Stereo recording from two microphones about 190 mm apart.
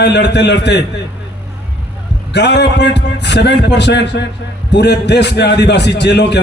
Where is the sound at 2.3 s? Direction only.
65° left (ahead or behind).